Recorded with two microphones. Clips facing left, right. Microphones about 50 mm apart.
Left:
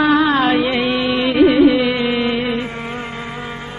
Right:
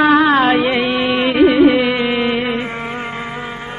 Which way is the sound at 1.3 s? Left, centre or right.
Centre.